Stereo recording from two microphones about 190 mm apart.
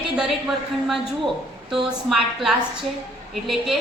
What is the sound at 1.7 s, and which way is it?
A woman's voice, centre (ahead or behind).